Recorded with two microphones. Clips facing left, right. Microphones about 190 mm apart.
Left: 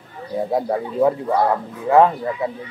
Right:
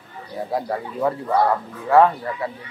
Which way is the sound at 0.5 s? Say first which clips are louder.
Left 3 dB; 20° left (ahead or behind).